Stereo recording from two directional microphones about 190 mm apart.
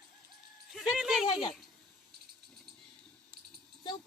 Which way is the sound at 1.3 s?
30° left (ahead or behind).